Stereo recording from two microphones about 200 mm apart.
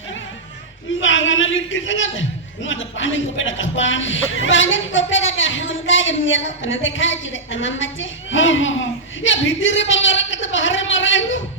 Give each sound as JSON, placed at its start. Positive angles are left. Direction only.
{"t": 1.0, "sound": "a man's voice", "side_deg": 70}